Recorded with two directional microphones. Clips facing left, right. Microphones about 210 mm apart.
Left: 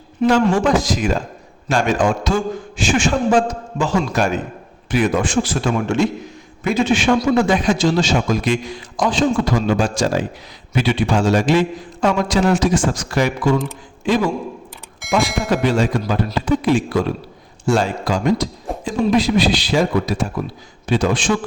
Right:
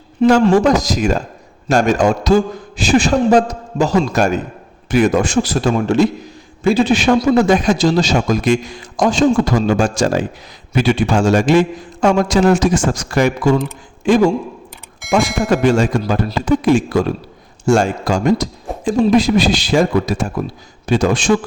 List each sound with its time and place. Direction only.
0.4 s a man's voice: 40° right (ahead or behind)
15.0 s speech: centre (ahead or behind)
15.4 s a man's voice: 45° right (ahead or behind)